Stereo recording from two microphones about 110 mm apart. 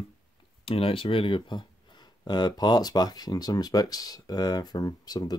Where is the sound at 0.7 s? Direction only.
60° left (ahead or behind).